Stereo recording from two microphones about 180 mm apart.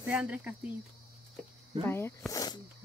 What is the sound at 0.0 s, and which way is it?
Speech, 5° right (ahead or behind).